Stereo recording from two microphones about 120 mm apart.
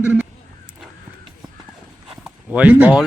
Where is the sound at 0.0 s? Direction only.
15° right (ahead or behind).